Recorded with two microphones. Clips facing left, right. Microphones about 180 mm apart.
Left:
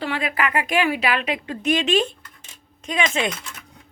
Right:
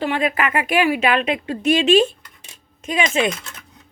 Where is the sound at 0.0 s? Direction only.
20° right (ahead or behind).